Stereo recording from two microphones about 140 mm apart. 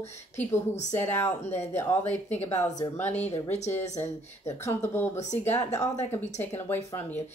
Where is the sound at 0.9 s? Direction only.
15° left (ahead or behind).